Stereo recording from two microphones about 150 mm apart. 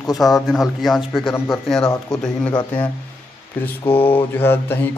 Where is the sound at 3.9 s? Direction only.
15° left (ahead or behind).